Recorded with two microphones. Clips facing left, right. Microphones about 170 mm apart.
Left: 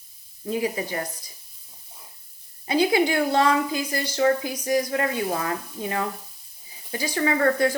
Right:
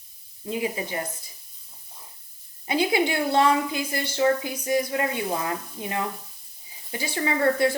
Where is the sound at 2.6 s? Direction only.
20° right (ahead or behind).